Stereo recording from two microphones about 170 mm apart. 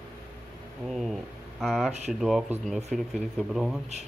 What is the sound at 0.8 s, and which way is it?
Speech, centre (ahead or behind).